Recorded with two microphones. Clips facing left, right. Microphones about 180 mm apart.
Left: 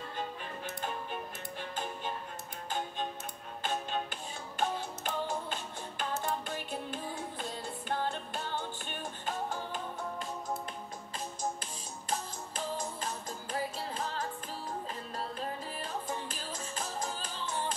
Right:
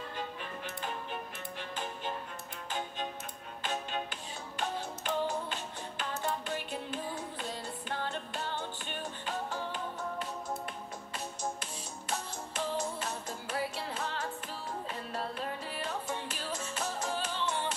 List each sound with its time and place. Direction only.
3.6 s music: 45° left (ahead or behind)
11.6 s music: 40° left (ahead or behind)